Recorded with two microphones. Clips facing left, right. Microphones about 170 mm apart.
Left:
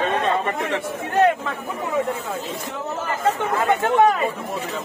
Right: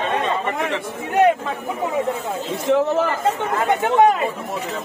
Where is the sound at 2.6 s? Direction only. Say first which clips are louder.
Right 11 dB; 85° right.